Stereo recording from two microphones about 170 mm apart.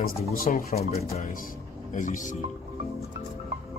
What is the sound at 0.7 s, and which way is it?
Speech, 40° left (ahead or behind).